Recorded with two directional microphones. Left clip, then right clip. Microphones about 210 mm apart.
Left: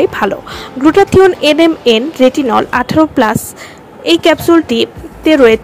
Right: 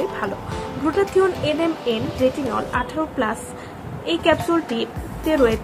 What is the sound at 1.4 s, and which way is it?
A woman's voice, 45° left (ahead or behind).